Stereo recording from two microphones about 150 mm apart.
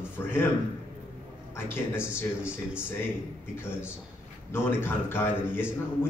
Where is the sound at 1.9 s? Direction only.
10° right (ahead or behind).